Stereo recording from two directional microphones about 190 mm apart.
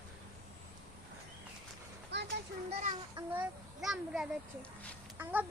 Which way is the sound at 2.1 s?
65° right (ahead or behind).